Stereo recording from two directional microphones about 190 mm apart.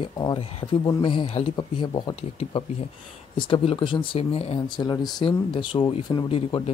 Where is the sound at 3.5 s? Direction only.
25° left (ahead or behind).